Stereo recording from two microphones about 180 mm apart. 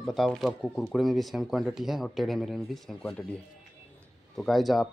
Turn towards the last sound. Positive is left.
turn(degrees=0)  # may be behind; listen again after turning